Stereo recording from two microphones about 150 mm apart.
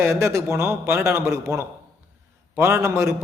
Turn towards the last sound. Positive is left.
turn(degrees=-20)  # may be behind; listen again after turning